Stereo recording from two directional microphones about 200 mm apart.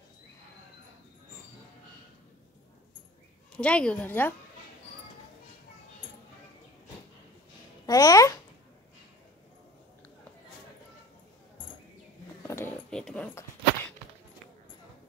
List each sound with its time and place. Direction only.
3.5 s speech: 5° left (ahead or behind)
7.8 s babbling: 20° left (ahead or behind)
12.4 s dog: 10° left (ahead or behind)